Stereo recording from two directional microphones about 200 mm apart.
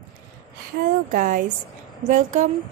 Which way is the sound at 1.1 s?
45° right (ahead or behind).